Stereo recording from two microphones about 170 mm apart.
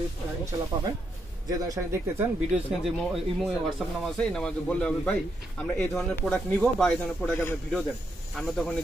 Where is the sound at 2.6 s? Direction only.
Centre (ahead or behind).